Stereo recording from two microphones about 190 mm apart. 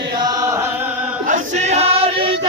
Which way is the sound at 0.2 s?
20° right (ahead or behind).